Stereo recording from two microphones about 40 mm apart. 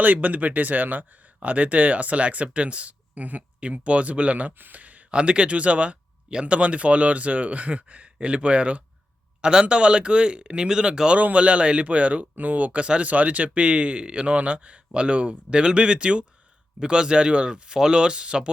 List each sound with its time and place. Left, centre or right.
0.0 s speech: right
3.6 s speech: right
4.7 s a sound: right
5.1 s speech: right
9.4 s speech: right
11.2 s speech: right
12.8 s speech: right
13.1 s speech: right